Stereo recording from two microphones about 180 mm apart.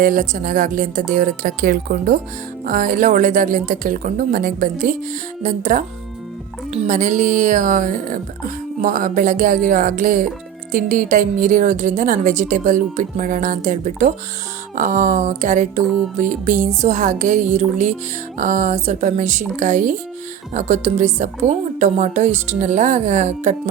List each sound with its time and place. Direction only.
0.0 s a woman's voice: 50° right (ahead or behind)